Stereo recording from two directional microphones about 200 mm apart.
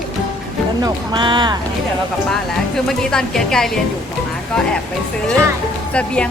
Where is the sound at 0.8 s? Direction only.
20° right (ahead or behind).